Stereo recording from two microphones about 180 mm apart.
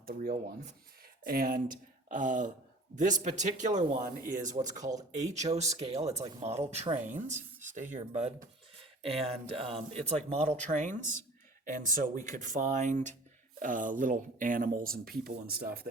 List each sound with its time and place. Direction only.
0.1 s speech: 50° right (ahead or behind)